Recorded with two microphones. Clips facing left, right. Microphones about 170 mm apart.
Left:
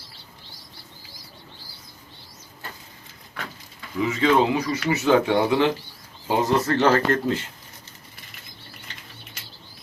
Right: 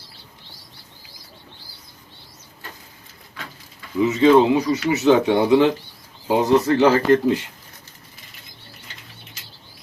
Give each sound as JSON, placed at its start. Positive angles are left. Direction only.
{"t": 4.0, "sound": "speech", "side_deg": -20}